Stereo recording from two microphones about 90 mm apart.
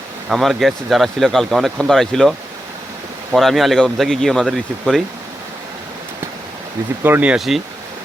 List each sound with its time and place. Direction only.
0.3 s speech: centre (ahead or behind)
3.3 s speech: centre (ahead or behind)
7.0 s speech: 20° right (ahead or behind)
7.3 s speech: centre (ahead or behind)